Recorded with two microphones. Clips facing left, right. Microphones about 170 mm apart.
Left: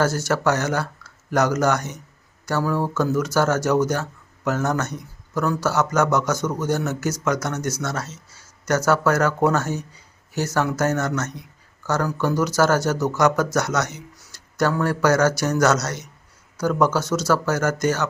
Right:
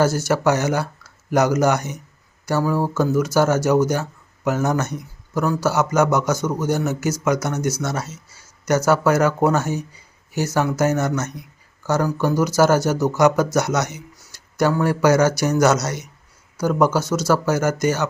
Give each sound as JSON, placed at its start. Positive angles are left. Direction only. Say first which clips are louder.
{"t": 0.0, "sound": "speech", "louder": "right 3 dB", "side_deg": -10}